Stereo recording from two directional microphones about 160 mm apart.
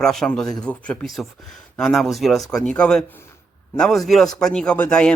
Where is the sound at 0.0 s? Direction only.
5° left (ahead or behind).